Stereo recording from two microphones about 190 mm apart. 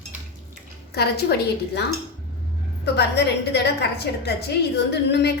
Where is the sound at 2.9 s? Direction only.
60° left (ahead or behind).